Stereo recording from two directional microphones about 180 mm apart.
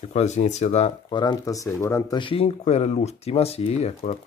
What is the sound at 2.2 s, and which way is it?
Speech, 30° left (ahead or behind).